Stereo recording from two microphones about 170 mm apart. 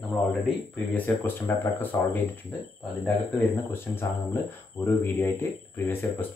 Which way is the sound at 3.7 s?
15° left (ahead or behind).